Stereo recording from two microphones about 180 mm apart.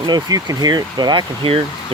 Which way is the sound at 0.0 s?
20° right (ahead or behind).